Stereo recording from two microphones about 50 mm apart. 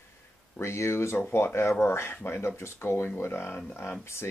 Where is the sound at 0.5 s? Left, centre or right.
Left.